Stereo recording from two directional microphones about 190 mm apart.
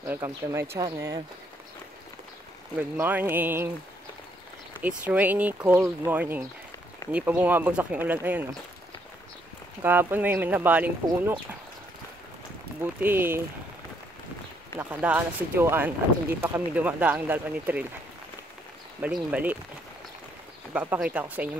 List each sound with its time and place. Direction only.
0.0 s speech: 15° right (ahead or behind)
2.8 s speech: 10° right (ahead or behind)
4.8 s speech: 10° right (ahead or behind)
9.8 s speech: 10° right (ahead or behind)
12.8 s speech: 10° right (ahead or behind)
14.8 s speech: 10° right (ahead or behind)
18.9 s speech: 5° right (ahead or behind)
20.7 s speech: 10° right (ahead or behind)